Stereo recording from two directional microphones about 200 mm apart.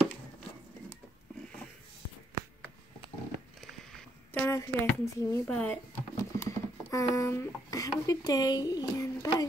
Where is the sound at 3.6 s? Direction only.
Centre (ahead or behind).